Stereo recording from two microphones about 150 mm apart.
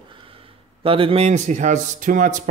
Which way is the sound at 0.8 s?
35° right (ahead or behind).